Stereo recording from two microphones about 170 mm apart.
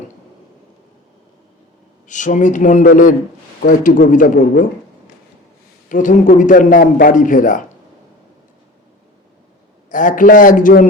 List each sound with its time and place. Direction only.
2.0 s a man's voice: 45° left (ahead or behind)
5.9 s a man's voice: 50° left (ahead or behind)
9.9 s a man's voice: 50° left (ahead or behind)